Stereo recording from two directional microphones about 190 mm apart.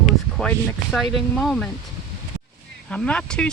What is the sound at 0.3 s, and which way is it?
Speech, centre (ahead or behind).